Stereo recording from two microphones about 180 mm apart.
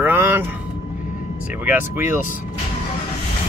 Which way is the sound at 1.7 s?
10° right (ahead or behind).